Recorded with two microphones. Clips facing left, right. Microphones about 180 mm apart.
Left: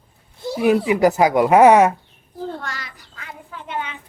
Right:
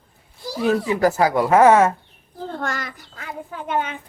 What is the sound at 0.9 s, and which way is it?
Speech, 15° left (ahead or behind).